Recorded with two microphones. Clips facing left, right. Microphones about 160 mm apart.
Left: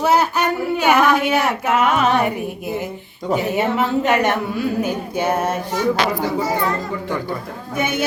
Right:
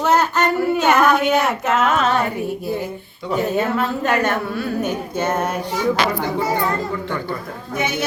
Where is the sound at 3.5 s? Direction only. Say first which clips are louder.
Left 2 dB; 20° left (ahead or behind).